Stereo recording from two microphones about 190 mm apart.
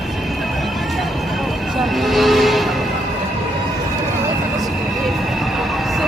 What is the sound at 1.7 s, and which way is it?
Vehicle, centre (ahead or behind).